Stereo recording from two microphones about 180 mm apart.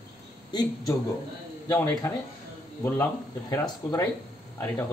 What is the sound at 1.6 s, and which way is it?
Speech, 10° left (ahead or behind).